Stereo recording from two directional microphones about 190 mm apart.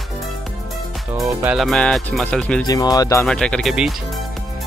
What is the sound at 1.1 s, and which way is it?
Speech, 10° right (ahead or behind).